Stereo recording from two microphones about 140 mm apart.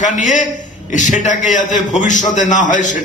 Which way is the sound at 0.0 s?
60° left (ahead or behind).